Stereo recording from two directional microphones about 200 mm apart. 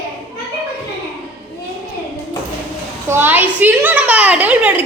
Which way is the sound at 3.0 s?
10° right (ahead or behind).